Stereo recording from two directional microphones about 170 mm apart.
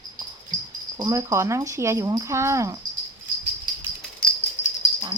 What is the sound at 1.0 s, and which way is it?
Speech, 20° right (ahead or behind).